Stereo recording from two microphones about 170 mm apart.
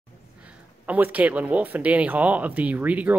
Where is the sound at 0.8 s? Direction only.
10° right (ahead or behind).